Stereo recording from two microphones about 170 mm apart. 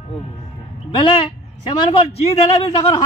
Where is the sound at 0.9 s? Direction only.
30° left (ahead or behind).